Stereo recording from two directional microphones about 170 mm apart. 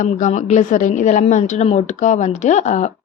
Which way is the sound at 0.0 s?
45° left (ahead or behind).